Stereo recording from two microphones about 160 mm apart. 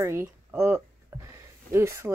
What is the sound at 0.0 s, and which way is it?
Speech, 15° right (ahead or behind).